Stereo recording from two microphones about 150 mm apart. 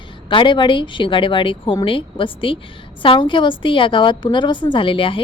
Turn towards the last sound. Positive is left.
turn(degrees=35)  # may be behind; listen again after turning